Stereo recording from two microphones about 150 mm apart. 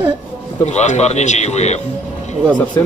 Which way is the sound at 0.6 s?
50° left (ahead or behind).